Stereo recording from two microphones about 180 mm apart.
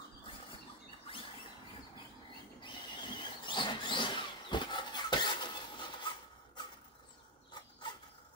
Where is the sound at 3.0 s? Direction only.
25° left (ahead or behind).